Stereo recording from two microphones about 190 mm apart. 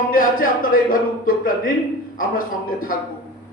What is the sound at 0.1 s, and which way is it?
Speech, 45° left (ahead or behind).